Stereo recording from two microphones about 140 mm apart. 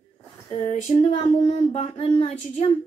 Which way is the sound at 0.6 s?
45° left (ahead or behind).